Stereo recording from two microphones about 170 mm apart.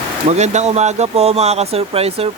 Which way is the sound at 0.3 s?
40° right (ahead or behind).